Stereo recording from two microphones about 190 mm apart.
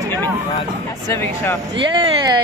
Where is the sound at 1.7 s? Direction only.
25° right (ahead or behind).